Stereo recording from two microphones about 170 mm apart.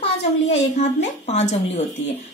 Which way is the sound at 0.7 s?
40° left (ahead or behind).